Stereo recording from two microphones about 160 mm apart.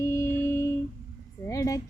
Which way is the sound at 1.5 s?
20° left (ahead or behind).